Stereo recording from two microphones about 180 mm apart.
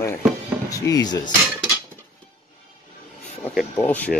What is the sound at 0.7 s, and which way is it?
Speech, 20° left (ahead or behind).